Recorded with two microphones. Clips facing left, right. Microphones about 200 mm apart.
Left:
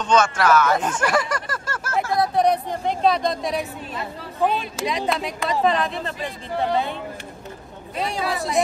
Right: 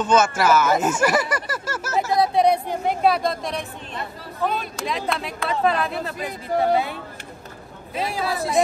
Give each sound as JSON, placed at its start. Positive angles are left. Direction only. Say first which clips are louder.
{"t": 0.0, "sound": "speech", "louder": "right 1 dB", "side_deg": -5}
{"t": 4.4, "sound": "speech", "louder": "left 3 dB", "side_deg": 15}
{"t": 4.7, "sound": "speech", "louder": "left 2 dB", "side_deg": 0}